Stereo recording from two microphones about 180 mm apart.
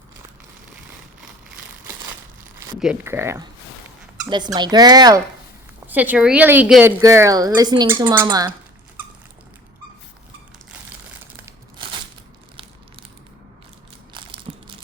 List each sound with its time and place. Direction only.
2.7 s speech: 5° right (ahead or behind)
3.0 s speech: 15° right (ahead or behind)
4.5 s speech: 20° right (ahead or behind)
5.9 s speech: 10° right (ahead or behind)
7.0 s speech: 15° right (ahead or behind)
8.0 s speech: 10° right (ahead or behind)
14.1 s crushing: 30° right (ahead or behind)